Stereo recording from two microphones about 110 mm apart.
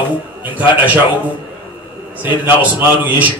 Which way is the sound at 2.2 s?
15° right (ahead or behind).